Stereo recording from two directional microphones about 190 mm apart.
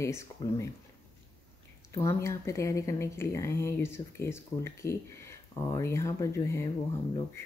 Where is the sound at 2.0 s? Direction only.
15° left (ahead or behind).